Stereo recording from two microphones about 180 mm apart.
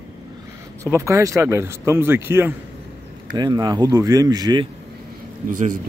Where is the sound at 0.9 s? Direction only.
15° right (ahead or behind).